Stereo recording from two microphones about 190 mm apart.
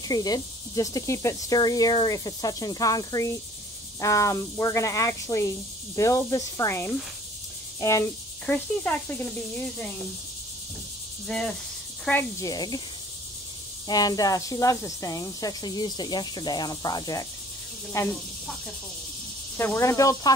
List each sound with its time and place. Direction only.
0.1 s speech: 20° left (ahead or behind)
8.5 s speech: 10° left (ahead or behind)
11.2 s cricket: 5° left (ahead or behind)
12.0 s speech: 10° left (ahead or behind)
13.8 s speech: 20° left (ahead or behind)
19.5 s speech: 10° left (ahead or behind)